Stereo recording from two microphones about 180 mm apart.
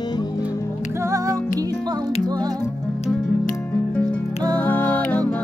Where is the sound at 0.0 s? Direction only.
25° left (ahead or behind).